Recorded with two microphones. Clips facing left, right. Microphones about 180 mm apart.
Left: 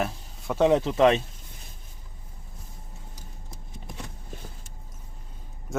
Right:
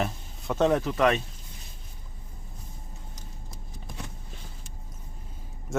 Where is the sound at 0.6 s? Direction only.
20° left (ahead or behind).